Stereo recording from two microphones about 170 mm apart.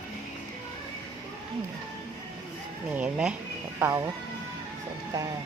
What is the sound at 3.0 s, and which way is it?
Speech, 5° right (ahead or behind).